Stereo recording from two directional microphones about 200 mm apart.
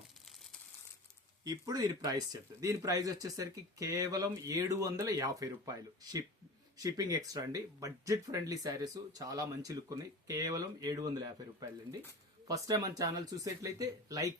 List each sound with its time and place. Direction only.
1.5 s speech: 20° right (ahead or behind)